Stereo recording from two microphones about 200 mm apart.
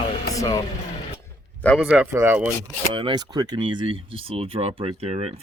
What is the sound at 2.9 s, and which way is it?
Speech, 25° right (ahead or behind).